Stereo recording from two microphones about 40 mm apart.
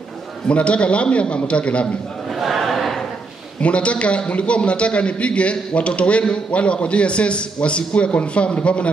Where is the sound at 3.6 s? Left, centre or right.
Left.